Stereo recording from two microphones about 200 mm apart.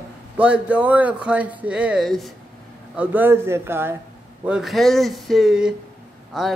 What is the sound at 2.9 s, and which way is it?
A man's voice, 10° right (ahead or behind).